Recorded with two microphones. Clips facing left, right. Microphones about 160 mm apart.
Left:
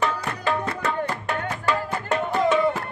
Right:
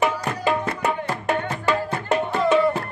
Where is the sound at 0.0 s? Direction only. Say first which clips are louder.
Right 3 dB; 15° right (ahead or behind).